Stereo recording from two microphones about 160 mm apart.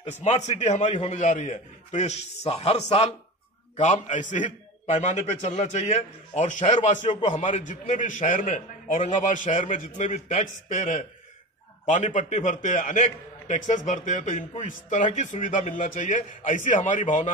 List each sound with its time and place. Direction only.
0.0 s a man's voice: 45° left (ahead or behind)
3.7 s a man's voice: 50° left (ahead or behind)